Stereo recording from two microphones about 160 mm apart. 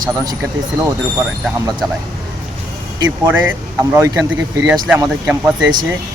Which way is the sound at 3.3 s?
15° right (ahead or behind).